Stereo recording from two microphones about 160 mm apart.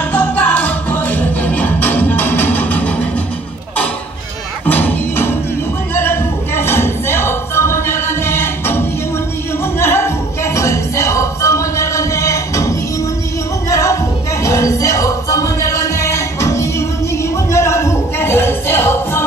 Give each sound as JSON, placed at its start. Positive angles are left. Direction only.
{"t": 0.1, "sound": "music", "side_deg": 10}
{"t": 4.6, "sound": "music", "side_deg": 10}
{"t": 5.9, "sound": "a sound", "side_deg": 15}
{"t": 9.8, "sound": "music", "side_deg": 15}
{"t": 13.7, "sound": "a sound", "side_deg": 20}
{"t": 14.4, "sound": "music", "side_deg": 20}